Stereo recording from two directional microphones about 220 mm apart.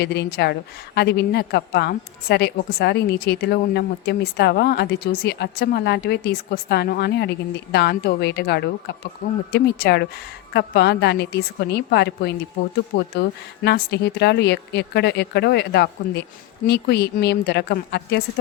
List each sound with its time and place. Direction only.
0.0 s a woman's voice: 50° left (ahead or behind)